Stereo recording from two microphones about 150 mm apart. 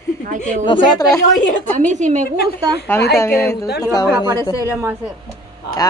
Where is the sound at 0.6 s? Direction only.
30° left (ahead or behind).